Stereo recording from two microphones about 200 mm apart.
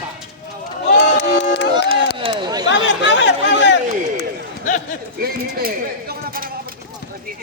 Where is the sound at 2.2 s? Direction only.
25° right (ahead or behind).